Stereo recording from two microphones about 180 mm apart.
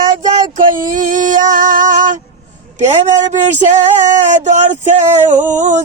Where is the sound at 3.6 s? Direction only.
45° right (ahead or behind).